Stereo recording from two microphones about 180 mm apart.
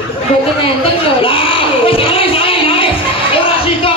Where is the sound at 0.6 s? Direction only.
30° left (ahead or behind).